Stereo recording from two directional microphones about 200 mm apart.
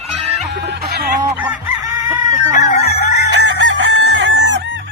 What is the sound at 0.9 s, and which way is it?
Chicken, 50° right (ahead or behind).